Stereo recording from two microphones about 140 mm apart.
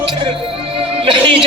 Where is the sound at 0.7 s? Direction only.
40° right (ahead or behind).